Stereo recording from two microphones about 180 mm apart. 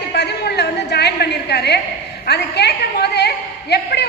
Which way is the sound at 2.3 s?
65° left (ahead or behind).